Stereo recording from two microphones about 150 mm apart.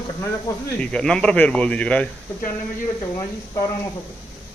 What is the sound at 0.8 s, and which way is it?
Speech, 5° left (ahead or behind).